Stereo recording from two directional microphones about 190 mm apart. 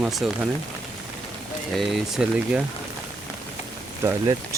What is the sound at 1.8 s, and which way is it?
Speech, centre (ahead or behind).